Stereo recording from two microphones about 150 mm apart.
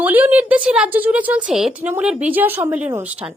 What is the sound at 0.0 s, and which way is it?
A woman's voice, 10° right (ahead or behind).